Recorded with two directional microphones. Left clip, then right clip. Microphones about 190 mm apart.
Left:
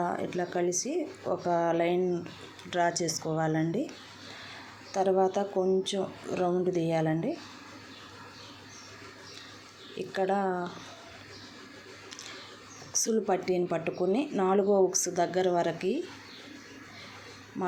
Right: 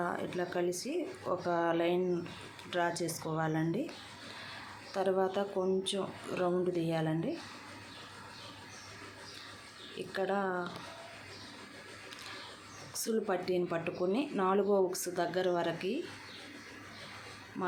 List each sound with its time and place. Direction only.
0.0 s speech: 15° left (ahead or behind)
4.9 s speech: 15° left (ahead or behind)
10.0 s speech: 15° left (ahead or behind)
13.1 s a woman's voice: 20° left (ahead or behind)